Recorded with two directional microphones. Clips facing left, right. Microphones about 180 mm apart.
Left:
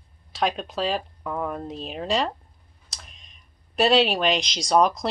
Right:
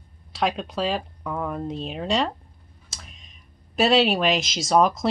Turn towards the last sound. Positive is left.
turn(degrees=0)  # may be behind; listen again after turning